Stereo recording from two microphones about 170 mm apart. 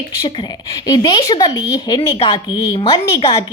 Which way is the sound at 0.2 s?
25° left (ahead or behind).